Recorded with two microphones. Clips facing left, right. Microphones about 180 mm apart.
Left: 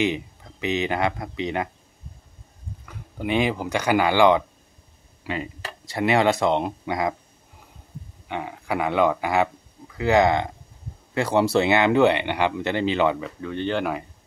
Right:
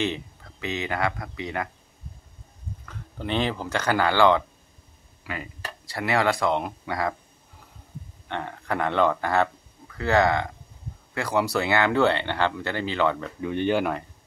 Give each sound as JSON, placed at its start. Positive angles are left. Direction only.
{"t": 0.0, "sound": "speech", "side_deg": 15}
{"t": 2.9, "sound": "speech", "side_deg": 10}
{"t": 8.3, "sound": "speech", "side_deg": 10}
{"t": 13.4, "sound": "speech", "side_deg": -15}